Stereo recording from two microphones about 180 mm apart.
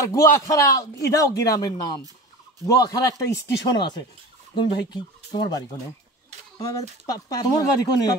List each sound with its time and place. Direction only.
0.0 s a man's voice: 15° left (ahead or behind)
7.1 s a man's voice: 20° left (ahead or behind)